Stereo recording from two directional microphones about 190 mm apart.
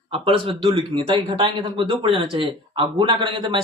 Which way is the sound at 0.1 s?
30° right (ahead or behind).